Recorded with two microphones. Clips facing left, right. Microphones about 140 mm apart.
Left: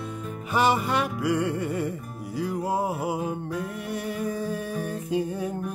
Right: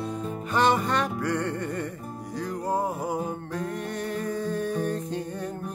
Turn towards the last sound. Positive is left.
turn(degrees=10)  # may be behind; listen again after turning